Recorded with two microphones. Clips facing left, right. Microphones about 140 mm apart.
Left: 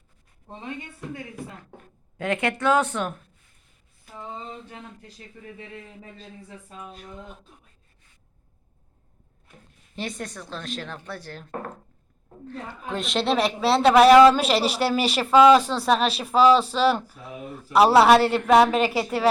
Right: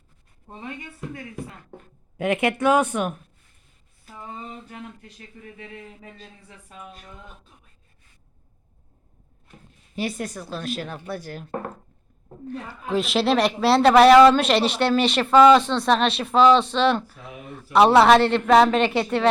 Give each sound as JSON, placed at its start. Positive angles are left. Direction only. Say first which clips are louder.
{"t": 2.1, "sound": "speech", "louder": "right 3 dB", "side_deg": -20}
{"t": 9.9, "sound": "speech", "louder": "right 4 dB", "side_deg": -10}
{"t": 12.5, "sound": "a woman's voice", "louder": "right 4 dB", "side_deg": -5}